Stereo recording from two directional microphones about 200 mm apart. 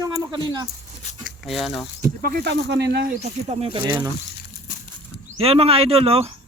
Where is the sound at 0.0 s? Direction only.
20° right (ahead or behind).